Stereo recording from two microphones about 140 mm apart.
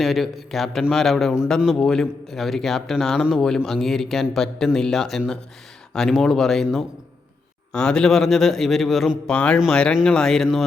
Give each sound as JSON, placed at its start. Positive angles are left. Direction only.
{"t": 0.0, "sound": "a man's voice", "side_deg": 0}